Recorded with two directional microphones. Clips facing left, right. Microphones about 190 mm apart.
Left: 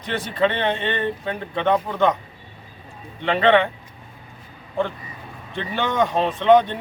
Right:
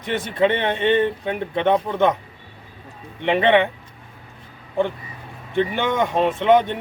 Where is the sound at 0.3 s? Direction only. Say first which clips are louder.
Right 1 dB; 15° right (ahead or behind).